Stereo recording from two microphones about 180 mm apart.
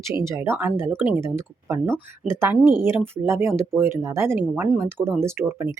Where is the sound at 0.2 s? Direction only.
15° right (ahead or behind).